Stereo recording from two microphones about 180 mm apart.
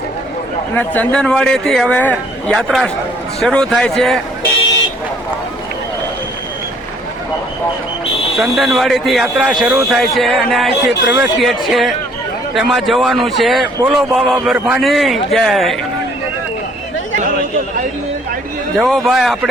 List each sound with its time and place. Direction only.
0.8 s speech: 5° left (ahead or behind)
8.4 s speech: centre (ahead or behind)
18.8 s speech: centre (ahead or behind)